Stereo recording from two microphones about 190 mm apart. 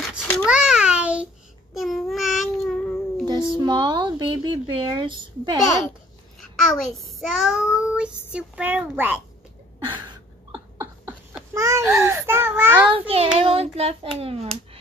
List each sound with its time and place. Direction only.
0.2 s babbling: 10° left (ahead or behind)
0.5 s babbling: 5° right (ahead or behind)
3.5 s speech: 25° right (ahead or behind)
6.4 s child singing: centre (ahead or behind)
10.5 s babbling: 10° right (ahead or behind)
12.9 s hands: 30° right (ahead or behind)